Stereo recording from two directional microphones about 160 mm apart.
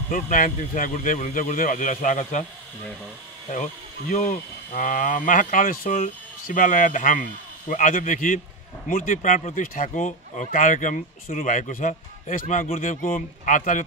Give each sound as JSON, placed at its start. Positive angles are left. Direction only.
{"t": 0.1, "sound": "speech", "side_deg": 55}
{"t": 3.4, "sound": "speech", "side_deg": 50}